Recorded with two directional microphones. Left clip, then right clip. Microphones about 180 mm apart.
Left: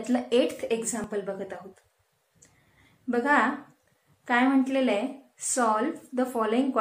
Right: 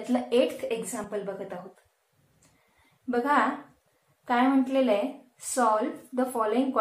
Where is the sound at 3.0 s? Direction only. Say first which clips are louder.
Left 1 dB; 20° left (ahead or behind).